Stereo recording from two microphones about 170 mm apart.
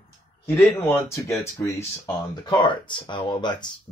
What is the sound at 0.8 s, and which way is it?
Speech, 15° left (ahead or behind).